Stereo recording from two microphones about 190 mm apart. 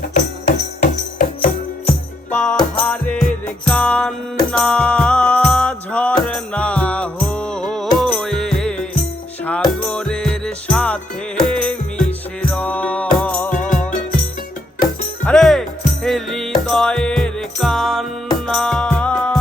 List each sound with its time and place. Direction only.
0.1 s music: 40° left (ahead or behind)
2.3 s music: 10° left (ahead or behind)
13.5 s music: 40° left (ahead or behind)
15.2 s music: 5° left (ahead or behind)